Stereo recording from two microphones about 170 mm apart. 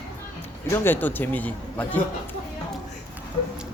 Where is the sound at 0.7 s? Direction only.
15° left (ahead or behind).